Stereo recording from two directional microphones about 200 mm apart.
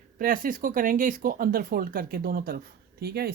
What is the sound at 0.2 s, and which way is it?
Speech, 45° right (ahead or behind).